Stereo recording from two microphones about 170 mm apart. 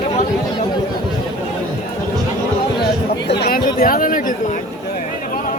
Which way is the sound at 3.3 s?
75° left (ahead or behind).